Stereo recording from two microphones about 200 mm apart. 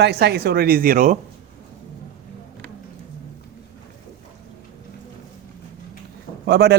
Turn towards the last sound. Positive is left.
turn(degrees=-55)  # may be behind; listen again after turning